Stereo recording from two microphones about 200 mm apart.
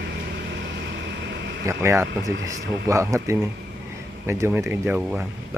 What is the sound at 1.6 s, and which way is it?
Speech, 15° right (ahead or behind).